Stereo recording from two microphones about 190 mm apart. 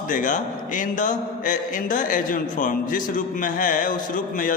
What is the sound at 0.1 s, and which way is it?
A man's voice, 40° left (ahead or behind).